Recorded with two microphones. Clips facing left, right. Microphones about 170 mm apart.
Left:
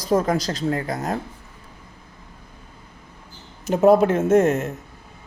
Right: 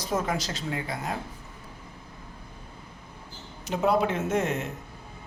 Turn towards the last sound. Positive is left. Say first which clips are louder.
# left 10 dB
turn(degrees=45)  # may be behind; listen again after turning